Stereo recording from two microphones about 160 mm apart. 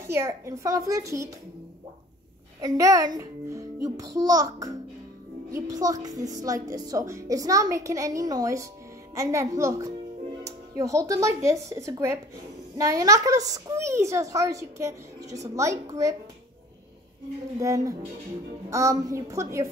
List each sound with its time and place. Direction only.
0.0 s a child's voice: 15° right (ahead or behind)
2.6 s a child's voice: 20° right (ahead or behind)
17.6 s a child's voice: 20° right (ahead or behind)